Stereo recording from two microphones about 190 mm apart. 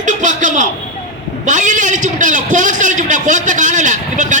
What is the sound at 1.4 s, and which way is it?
A man's voice, 40° right (ahead or behind).